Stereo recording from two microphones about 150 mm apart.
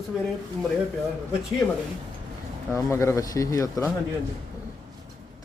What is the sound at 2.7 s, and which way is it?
A man's voice, 20° left (ahead or behind).